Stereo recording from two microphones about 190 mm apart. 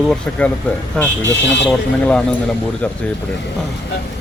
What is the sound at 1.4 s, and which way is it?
Speech, 70° left (ahead or behind).